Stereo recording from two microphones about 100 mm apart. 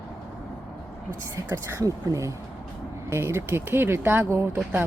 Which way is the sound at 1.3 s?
30° right (ahead or behind).